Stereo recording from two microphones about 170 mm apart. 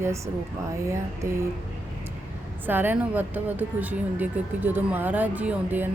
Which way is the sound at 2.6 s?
10° right (ahead or behind).